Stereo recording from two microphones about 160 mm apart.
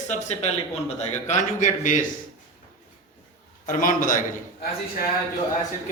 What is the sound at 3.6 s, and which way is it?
Speech, 60° left (ahead or behind).